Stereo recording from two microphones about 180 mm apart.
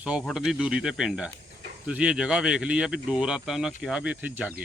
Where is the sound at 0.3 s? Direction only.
Centre (ahead or behind).